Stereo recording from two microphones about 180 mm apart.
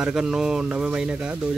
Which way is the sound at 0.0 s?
5° right (ahead or behind).